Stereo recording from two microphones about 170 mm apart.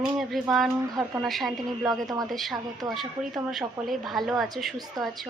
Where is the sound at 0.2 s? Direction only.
Centre (ahead or behind).